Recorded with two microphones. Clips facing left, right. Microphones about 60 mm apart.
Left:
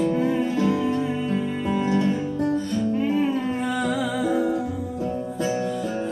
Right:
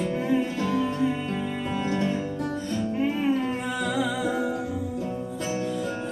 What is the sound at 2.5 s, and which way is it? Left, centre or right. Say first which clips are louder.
Music: left 5 dB; right.